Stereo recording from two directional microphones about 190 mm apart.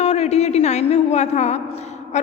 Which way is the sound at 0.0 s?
35° left (ahead or behind).